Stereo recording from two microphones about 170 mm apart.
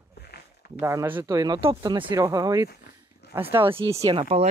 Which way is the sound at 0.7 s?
15° right (ahead or behind).